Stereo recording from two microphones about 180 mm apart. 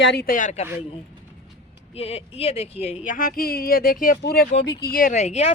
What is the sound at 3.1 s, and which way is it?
Speech, 50° left (ahead or behind).